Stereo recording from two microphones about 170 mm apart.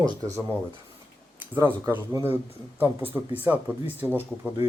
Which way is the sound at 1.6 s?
15° right (ahead or behind).